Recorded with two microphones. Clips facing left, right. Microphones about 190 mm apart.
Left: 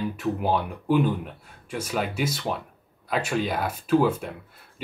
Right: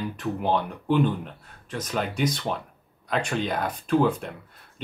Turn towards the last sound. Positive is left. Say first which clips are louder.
# left 1 dB
turn(degrees=5)  # may be behind; listen again after turning